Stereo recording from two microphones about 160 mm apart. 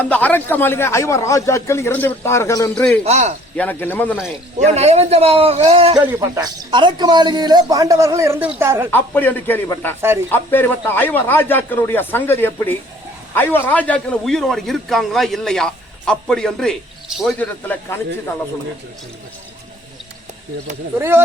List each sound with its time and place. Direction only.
0.0 s a man's voice: 10° left (ahead or behind)
2.7 s a man's voice: 5° left (ahead or behind)
3.0 s a man's voice: 45° right (ahead or behind)
3.6 s a man's voice: 10° left (ahead or behind)
4.7 s a man's voice: 40° right (ahead or behind)
6.1 s a man's voice: 25° right (ahead or behind)
8.9 s a man's voice: 10° left (ahead or behind)
10.0 s a woman's voice: 15° right (ahead or behind)
10.3 s a man's voice: 15° left (ahead or behind)
21.0 s a woman's voice: 15° right (ahead or behind)